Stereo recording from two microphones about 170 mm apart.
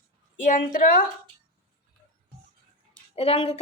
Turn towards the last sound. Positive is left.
turn(degrees=35)  # may be behind; listen again after turning